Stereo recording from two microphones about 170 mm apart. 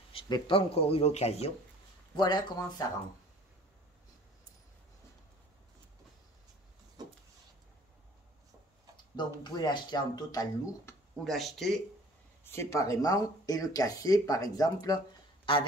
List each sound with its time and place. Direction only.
0.1 s speech: 30° left (ahead or behind)
2.1 s speech: 25° left (ahead or behind)
8.9 s speech: 25° left (ahead or behind)
11.2 s speech: centre (ahead or behind)
12.4 s speech: 15° left (ahead or behind)